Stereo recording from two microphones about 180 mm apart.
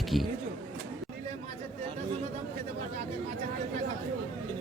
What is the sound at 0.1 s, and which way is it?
Speech, centre (ahead or behind).